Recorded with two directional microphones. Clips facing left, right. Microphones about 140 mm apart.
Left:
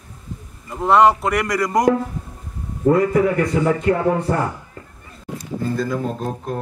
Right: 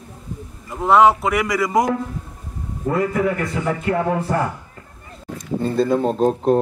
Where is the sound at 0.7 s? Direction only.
Centre (ahead or behind).